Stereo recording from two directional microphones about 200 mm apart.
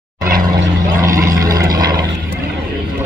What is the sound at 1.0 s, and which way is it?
Vehicle, 15° right (ahead or behind).